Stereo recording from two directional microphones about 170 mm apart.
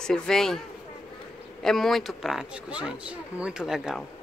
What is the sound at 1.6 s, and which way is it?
Speech, centre (ahead or behind).